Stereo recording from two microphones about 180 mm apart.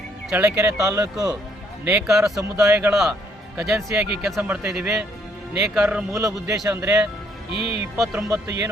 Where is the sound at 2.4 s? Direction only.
15° right (ahead or behind).